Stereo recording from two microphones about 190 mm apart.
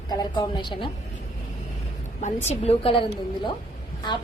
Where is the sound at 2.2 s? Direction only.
35° left (ahead or behind).